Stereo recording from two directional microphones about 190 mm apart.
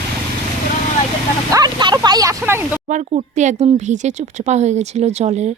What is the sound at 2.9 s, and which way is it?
Speech, 40° right (ahead or behind).